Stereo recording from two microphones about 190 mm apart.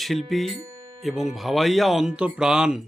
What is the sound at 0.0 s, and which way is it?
Speech, centre (ahead or behind).